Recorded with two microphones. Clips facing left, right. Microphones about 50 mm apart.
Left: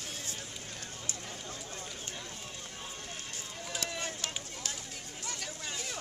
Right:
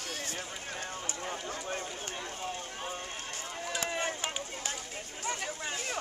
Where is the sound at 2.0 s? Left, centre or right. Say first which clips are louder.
Right 6 dB; right.